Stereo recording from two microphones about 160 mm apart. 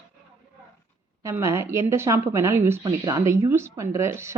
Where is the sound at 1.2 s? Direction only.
20° right (ahead or behind).